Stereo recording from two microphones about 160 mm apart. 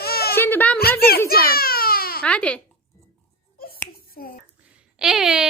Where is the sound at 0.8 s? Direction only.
75° left (ahead or behind).